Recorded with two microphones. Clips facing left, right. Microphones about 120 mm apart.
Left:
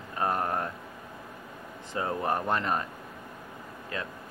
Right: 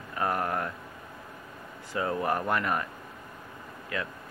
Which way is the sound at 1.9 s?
25° left (ahead or behind).